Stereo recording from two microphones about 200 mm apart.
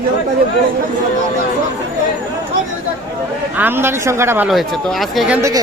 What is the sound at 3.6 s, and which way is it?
A man's voice, 10° right (ahead or behind).